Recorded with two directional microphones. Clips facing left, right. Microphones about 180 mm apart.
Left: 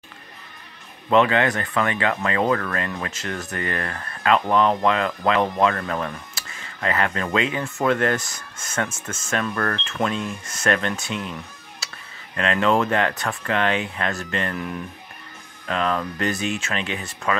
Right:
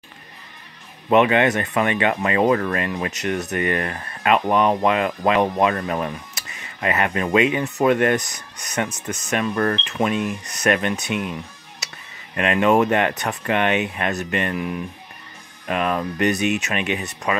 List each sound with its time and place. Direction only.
1.1 s speech: 20° right (ahead or behind)
11.8 s music: 20° right (ahead or behind)
12.4 s speech: 15° right (ahead or behind)